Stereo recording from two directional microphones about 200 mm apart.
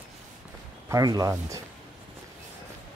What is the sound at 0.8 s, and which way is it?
Speech, 15° right (ahead or behind).